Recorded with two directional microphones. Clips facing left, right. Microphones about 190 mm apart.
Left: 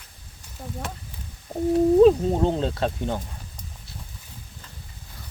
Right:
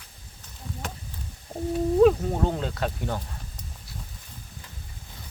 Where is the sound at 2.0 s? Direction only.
25° left (ahead or behind).